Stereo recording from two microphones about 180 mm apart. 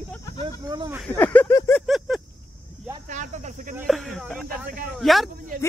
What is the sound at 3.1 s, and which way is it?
Speech, 40° right (ahead or behind).